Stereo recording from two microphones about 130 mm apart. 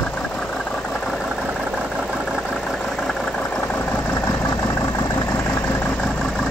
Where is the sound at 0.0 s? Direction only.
10° left (ahead or behind).